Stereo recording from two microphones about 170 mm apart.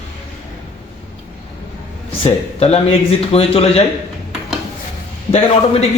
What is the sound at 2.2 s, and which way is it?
Speech, 35° left (ahead or behind).